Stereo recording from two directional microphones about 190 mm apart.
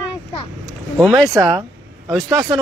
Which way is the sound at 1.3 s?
15° right (ahead or behind).